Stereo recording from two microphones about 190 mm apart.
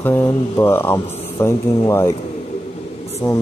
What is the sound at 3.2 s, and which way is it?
Speech, 20° left (ahead or behind).